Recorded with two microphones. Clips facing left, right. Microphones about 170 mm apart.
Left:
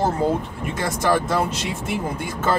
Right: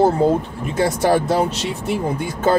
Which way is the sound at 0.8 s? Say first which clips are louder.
Right 5 dB; 35° right (ahead or behind).